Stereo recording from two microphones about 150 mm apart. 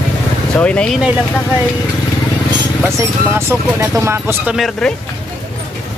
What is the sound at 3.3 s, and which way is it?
Speech, 20° right (ahead or behind).